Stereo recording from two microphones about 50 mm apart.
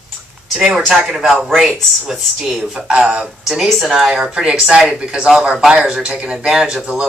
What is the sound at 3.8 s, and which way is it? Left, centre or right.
Speech, centre.